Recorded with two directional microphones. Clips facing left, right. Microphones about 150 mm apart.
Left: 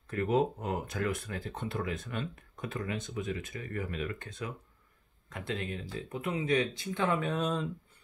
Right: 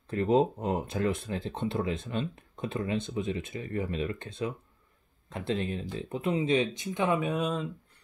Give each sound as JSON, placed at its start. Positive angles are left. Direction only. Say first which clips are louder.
{"t": 0.1, "sound": "speech", "louder": "right 4 dB", "side_deg": -30}